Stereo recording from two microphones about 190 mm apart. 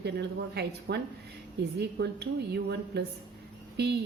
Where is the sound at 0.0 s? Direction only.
60° right (ahead or behind).